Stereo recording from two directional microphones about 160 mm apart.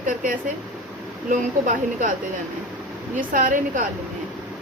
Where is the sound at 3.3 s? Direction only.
55° right (ahead or behind).